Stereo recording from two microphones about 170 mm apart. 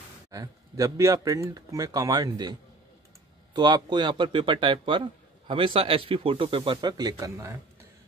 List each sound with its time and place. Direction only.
0.3 s a man's voice: 20° right (ahead or behind)
3.5 s a man's voice: 25° right (ahead or behind)